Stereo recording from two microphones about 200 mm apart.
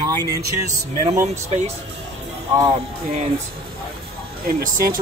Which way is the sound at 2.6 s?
35° right (ahead or behind).